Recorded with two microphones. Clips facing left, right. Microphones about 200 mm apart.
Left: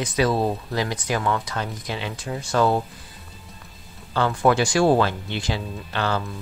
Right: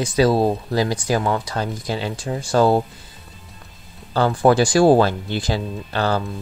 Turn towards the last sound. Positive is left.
turn(degrees=-40)  # may be behind; listen again after turning